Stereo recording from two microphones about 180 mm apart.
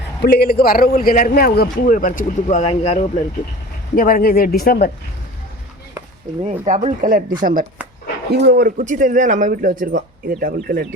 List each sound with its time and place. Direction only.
0.2 s a man's voice: 60° left (ahead or behind); by 3.1 s 35° left (ahead or behind)
3.9 s a man's voice: 50° left (ahead or behind)
6.4 s speech: 35° right (ahead or behind)
8.3 s speech: 60° right (ahead or behind)